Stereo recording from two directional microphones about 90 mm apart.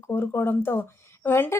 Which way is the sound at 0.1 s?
25° left (ahead or behind).